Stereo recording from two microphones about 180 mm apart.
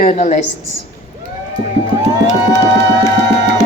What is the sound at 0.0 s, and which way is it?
Speech, 50° left (ahead or behind).